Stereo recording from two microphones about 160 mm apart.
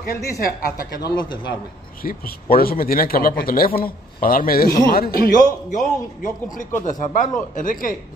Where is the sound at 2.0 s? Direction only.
65° left (ahead or behind).